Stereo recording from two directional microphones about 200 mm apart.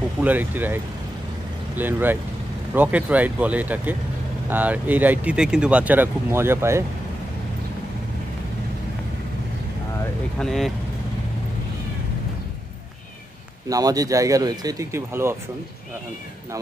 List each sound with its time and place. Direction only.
0.2 s speech: 10° right (ahead or behind)
1.8 s speech: 10° right (ahead or behind)
10.4 s speech: centre (ahead or behind)
13.7 s speech: 20° right (ahead or behind)